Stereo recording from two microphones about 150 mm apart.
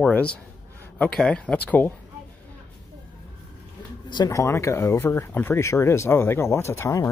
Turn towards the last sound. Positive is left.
turn(degrees=20)  # may be behind; listen again after turning